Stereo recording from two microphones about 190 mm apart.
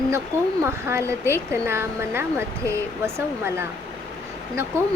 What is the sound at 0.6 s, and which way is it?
Speech, 15° right (ahead or behind).